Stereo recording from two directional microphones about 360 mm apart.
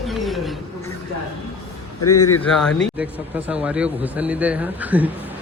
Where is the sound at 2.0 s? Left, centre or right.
Left.